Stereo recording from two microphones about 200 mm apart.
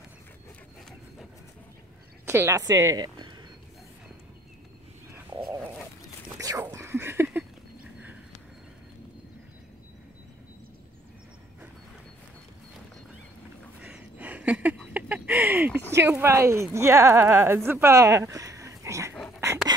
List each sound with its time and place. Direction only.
2.2 s a woman's voice: 10° right (ahead or behind)
6.3 s whispering: 15° right (ahead or behind)
13.7 s a sound: 5° right (ahead or behind)
15.9 s speech: 10° right (ahead or behind)
19.1 s dog: centre (ahead or behind)